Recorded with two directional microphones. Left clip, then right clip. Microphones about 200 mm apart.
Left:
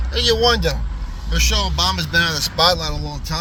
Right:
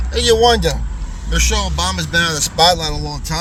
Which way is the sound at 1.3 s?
15° right (ahead or behind).